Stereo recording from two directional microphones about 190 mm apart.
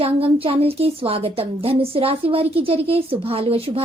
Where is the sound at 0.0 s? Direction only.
30° right (ahead or behind).